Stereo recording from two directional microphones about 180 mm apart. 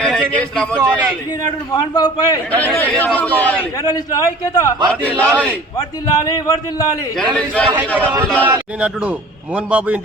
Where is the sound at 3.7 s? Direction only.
20° left (ahead or behind).